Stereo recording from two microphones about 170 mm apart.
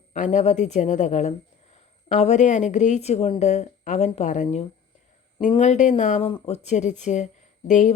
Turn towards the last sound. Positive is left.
turn(degrees=45)  # may be behind; listen again after turning